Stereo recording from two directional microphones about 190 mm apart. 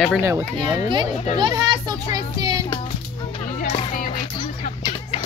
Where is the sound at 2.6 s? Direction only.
30° left (ahead or behind).